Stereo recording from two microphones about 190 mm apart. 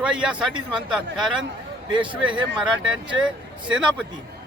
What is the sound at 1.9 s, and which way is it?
Speech, 25° right (ahead or behind).